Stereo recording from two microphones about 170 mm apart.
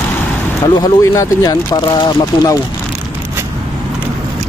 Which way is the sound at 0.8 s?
20° left (ahead or behind).